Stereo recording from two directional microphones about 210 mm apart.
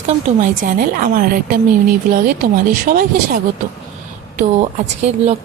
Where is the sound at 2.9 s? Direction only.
45° right (ahead or behind).